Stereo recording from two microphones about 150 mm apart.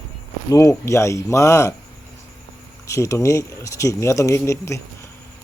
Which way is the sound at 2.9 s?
20° left (ahead or behind).